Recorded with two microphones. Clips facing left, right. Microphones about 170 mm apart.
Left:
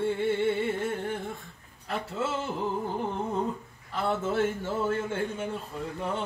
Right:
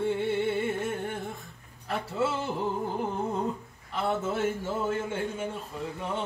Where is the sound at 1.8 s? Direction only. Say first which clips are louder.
Right 2 dB; 5° right (ahead or behind).